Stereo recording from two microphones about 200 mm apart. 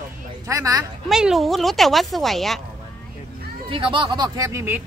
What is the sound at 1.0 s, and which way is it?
Speech, centre (ahead or behind).